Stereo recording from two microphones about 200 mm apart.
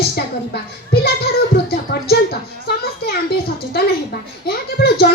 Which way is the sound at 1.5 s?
55° left (ahead or behind).